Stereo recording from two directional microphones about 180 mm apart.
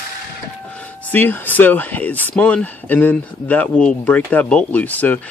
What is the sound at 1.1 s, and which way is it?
Speech, 10° left (ahead or behind).